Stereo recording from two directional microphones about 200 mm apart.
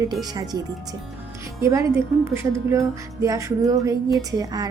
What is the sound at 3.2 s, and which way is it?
A woman's voice, 15° right (ahead or behind).